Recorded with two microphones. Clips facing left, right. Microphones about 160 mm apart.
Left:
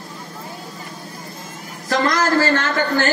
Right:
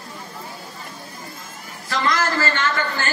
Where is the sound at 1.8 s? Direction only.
45° left (ahead or behind).